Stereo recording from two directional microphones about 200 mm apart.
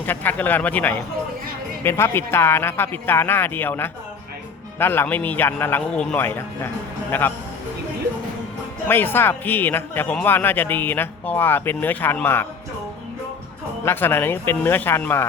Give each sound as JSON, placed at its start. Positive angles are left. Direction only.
{"t": 0.0, "sound": "speech", "side_deg": 10}
{"t": 8.9, "sound": "speech", "side_deg": 10}
{"t": 13.8, "sound": "speech", "side_deg": 10}